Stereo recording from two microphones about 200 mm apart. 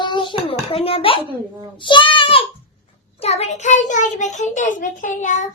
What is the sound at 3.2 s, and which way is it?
A child's voice, 30° left (ahead or behind).